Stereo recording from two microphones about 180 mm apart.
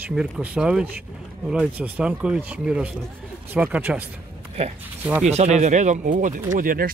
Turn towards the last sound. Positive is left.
turn(degrees=-50)  # may be behind; listen again after turning